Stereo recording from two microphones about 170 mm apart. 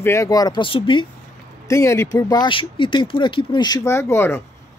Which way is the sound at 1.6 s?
15° left (ahead or behind).